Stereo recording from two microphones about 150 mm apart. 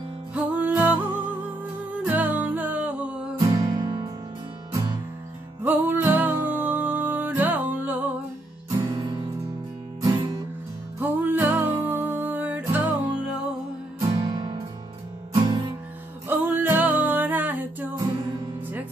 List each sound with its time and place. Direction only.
0.3 s music: 10° right (ahead or behind)
2.0 s music: 10° right (ahead or behind)
3.3 s music: 25° right (ahead or behind)
5.6 s music: 15° right (ahead or behind)
8.6 s guitar: 20° right (ahead or behind)
10.0 s music: 30° right (ahead or behind)
11.0 s music: 15° right (ahead or behind)
13.9 s music: 30° right (ahead or behind)
16.3 s music: 15° right (ahead or behind)